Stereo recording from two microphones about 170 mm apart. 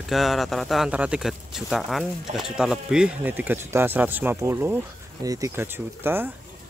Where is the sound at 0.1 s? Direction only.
Centre (ahead or behind).